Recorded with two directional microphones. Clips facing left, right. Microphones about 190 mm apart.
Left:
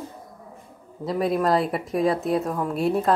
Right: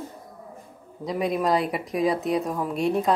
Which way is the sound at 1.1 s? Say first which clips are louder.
Left 2 dB; centre (ahead or behind).